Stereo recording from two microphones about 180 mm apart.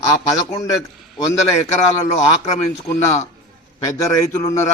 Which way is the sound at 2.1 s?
35° left (ahead or behind).